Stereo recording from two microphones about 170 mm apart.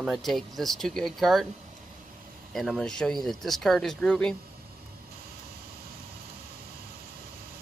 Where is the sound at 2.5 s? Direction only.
Centre (ahead or behind).